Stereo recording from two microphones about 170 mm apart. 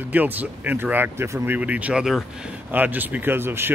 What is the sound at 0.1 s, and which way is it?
Speech, 10° right (ahead or behind).